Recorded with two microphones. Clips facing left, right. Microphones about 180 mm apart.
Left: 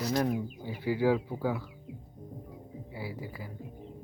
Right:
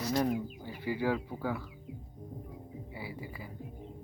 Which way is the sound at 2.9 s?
5° left (ahead or behind).